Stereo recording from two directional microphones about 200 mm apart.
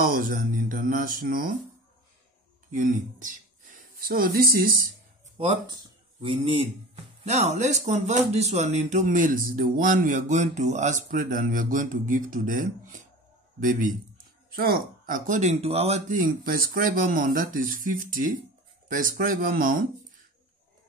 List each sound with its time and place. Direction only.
0.0 s speech: 45° right (ahead or behind)
2.7 s speech: 40° right (ahead or behind)
6.2 s speech: 25° right (ahead or behind)
16.2 s speech: 45° right (ahead or behind)